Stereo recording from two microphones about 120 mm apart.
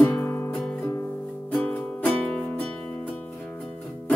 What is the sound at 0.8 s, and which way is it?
Music, 20° left (ahead or behind).